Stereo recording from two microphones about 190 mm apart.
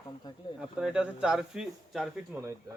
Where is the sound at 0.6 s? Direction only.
5° right (ahead or behind).